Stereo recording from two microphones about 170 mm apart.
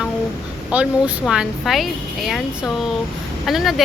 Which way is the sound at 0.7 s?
10° right (ahead or behind).